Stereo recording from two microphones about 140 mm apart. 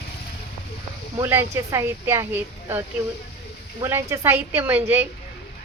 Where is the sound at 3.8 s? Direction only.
20° right (ahead or behind).